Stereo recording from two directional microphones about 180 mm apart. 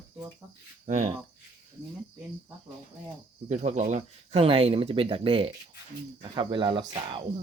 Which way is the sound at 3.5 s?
40° right (ahead or behind).